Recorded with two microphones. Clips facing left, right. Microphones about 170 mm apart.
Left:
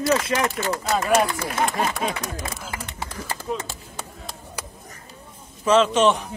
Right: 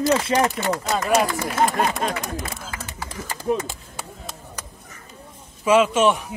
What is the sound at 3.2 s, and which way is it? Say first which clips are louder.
Speech: left 1 dB; 5° right (ahead or behind).